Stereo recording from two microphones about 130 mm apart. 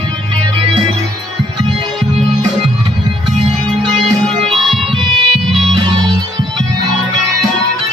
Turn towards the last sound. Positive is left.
turn(degrees=-45)  # may be behind; listen again after turning